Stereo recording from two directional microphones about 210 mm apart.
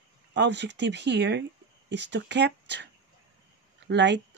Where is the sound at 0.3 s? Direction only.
55° right (ahead or behind).